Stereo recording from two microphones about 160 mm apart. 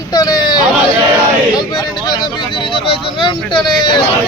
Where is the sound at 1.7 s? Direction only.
25° left (ahead or behind).